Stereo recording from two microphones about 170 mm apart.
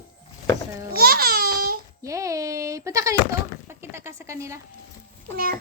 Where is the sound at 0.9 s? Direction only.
60° right (ahead or behind).